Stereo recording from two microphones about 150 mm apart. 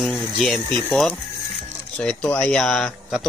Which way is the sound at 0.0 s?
5° left (ahead or behind).